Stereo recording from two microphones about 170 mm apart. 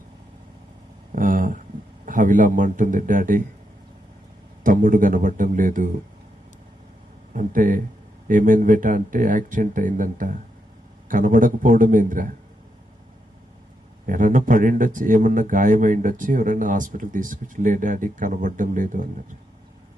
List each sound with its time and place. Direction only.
1.1 s a sound: 55° right (ahead or behind)
2.0 s a man's voice: 50° right (ahead or behind)
4.6 s a man's voice: 50° right (ahead or behind)
7.3 s a man's voice: 50° right (ahead or behind)
14.1 s a man's voice: 50° right (ahead or behind)